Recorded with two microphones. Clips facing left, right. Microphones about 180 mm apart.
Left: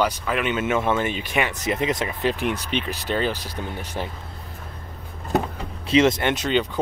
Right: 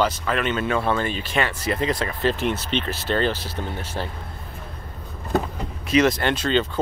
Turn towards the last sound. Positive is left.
turn(degrees=15)  # may be behind; listen again after turning